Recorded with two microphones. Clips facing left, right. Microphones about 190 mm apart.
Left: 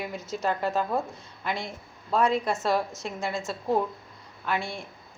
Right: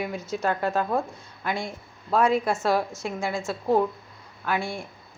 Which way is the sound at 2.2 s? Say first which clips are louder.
Right 2 dB; centre (ahead or behind).